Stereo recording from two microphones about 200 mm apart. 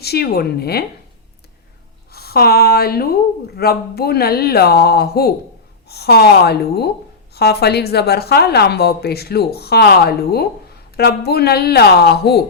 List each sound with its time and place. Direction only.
0.0 s a woman's voice: 50° left (ahead or behind)
2.1 s a woman's voice: 50° left (ahead or behind)